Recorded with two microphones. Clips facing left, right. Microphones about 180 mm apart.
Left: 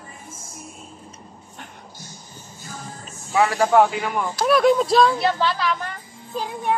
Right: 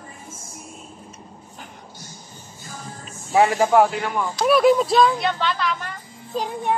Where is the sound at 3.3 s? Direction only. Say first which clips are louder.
Right 3 dB; 30° right (ahead or behind).